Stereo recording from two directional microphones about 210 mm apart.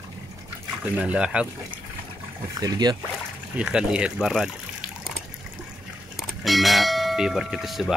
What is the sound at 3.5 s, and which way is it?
Speech, 5° right (ahead or behind).